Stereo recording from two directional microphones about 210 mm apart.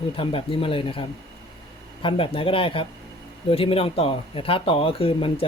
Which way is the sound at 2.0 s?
25° left (ahead or behind).